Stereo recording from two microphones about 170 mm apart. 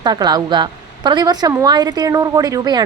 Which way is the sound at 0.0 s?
25° right (ahead or behind).